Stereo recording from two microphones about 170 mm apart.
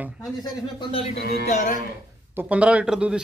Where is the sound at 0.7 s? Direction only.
35° left (ahead or behind).